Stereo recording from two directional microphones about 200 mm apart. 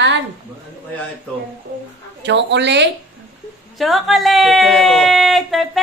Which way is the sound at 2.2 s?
60° right (ahead or behind).